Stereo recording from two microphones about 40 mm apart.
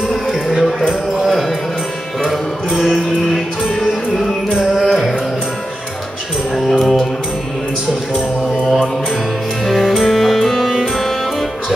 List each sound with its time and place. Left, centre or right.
0.1 s a sound: centre
2.8 s music: centre
4.1 s music: centre
6.5 s music: centre
9.7 s music: centre